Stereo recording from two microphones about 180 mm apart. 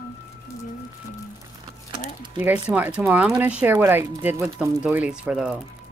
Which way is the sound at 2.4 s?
10° right (ahead or behind).